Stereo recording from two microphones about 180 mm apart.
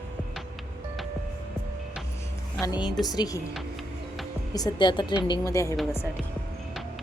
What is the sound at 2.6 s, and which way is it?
Speech, 25° left (ahead or behind).